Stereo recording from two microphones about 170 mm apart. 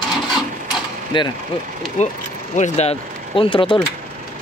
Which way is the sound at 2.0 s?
45° left (ahead or behind).